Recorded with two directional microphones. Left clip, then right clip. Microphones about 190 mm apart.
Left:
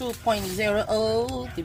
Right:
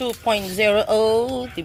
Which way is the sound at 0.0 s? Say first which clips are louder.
Right 4 dB; 30° right (ahead or behind).